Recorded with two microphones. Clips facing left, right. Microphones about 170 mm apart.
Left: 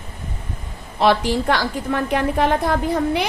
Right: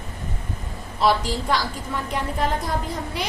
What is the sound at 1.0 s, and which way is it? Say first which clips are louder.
A woman's voice: left 4 dB; 65° left (ahead or behind).